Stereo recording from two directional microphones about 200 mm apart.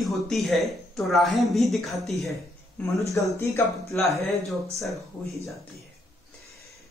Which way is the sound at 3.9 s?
Centre (ahead or behind).